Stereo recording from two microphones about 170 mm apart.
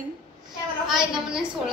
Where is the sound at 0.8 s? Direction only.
5° right (ahead or behind).